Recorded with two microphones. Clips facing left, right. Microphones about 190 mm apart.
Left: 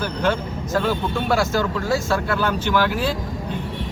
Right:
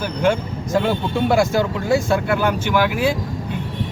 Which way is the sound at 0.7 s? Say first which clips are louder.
Right 3 dB; 15° right (ahead or behind).